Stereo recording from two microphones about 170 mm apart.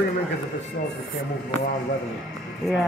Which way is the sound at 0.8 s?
60° left (ahead or behind).